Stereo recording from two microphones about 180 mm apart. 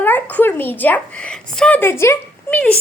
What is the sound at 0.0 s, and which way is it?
A woman's voice, 10° left (ahead or behind).